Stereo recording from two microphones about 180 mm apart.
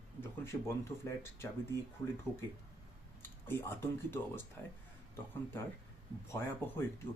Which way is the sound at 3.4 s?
10° left (ahead or behind).